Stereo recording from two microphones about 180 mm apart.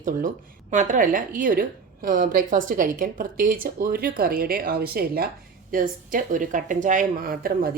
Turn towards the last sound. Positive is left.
turn(degrees=-55)  # may be behind; listen again after turning